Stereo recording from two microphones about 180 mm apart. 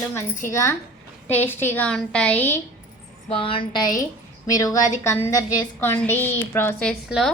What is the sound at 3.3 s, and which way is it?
A woman's voice, 30° left (ahead or behind).